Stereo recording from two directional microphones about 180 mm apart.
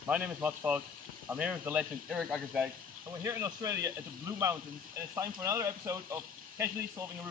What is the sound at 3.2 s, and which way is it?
Speech, 15° right (ahead or behind).